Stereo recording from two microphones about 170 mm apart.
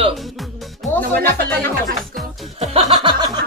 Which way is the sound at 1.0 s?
65° right (ahead or behind).